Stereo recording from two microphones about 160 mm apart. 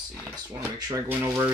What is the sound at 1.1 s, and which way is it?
Speech, 10° right (ahead or behind).